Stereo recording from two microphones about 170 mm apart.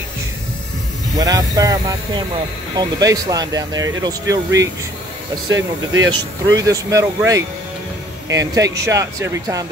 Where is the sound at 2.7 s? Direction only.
20° right (ahead or behind).